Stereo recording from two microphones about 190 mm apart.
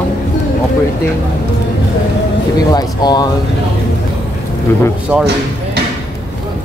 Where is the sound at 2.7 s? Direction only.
20° left (ahead or behind).